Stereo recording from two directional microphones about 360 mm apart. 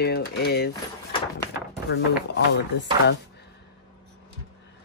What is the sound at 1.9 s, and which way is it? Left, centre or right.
Speech, left.